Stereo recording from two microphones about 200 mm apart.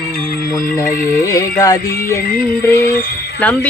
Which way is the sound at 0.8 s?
45° left (ahead or behind).